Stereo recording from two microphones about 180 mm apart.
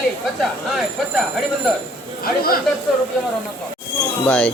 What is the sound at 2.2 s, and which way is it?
Speech, 55° left (ahead or behind).